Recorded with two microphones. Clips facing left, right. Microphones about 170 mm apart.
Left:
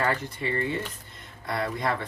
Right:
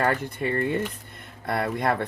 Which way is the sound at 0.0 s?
50° right (ahead or behind).